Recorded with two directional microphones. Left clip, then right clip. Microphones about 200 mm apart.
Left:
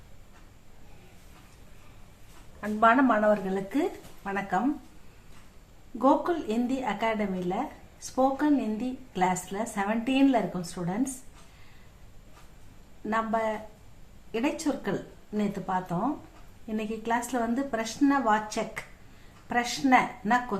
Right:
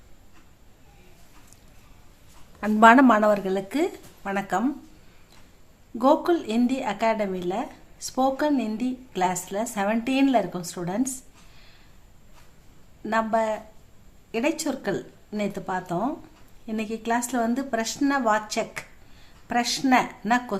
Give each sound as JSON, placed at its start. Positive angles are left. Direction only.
{"t": 2.6, "sound": "a woman's voice", "side_deg": -55}
{"t": 6.0, "sound": "a woman's voice", "side_deg": -45}
{"t": 13.1, "sound": "a woman's voice", "side_deg": -45}